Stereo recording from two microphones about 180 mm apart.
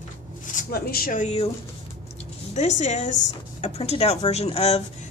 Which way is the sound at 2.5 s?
40° left (ahead or behind).